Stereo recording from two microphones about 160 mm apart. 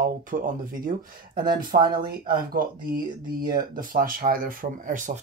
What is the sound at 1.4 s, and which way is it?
Speech, 25° right (ahead or behind).